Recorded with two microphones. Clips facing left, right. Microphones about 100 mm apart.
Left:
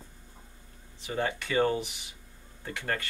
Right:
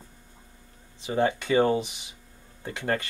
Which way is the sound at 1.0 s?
20° right (ahead or behind).